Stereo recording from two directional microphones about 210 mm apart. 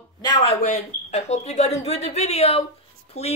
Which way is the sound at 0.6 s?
30° left (ahead or behind).